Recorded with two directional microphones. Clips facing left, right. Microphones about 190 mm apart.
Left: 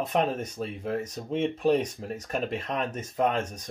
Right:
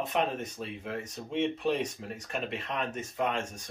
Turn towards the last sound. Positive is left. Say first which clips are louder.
# left 5 dB
turn(degrees=40)  # may be behind; listen again after turning